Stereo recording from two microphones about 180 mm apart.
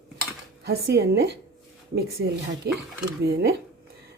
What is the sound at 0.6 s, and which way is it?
Speech, 60° right (ahead or behind).